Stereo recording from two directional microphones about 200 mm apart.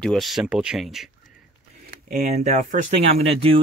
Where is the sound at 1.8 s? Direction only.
40° right (ahead or behind).